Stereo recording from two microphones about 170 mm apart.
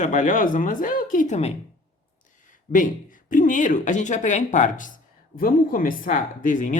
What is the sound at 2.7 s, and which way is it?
Speech, 55° left (ahead or behind).